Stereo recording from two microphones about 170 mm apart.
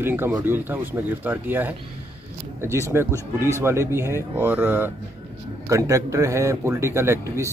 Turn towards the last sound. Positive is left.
turn(degrees=-15)  # may be behind; listen again after turning